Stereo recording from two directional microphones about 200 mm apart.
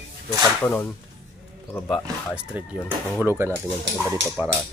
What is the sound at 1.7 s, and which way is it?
Speech, 5° left (ahead or behind).